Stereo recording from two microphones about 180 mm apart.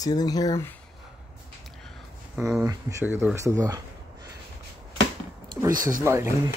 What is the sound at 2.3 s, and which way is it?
Speech, 5° right (ahead or behind).